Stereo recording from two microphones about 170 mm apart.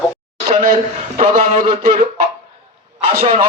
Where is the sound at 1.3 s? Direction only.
45° right (ahead or behind).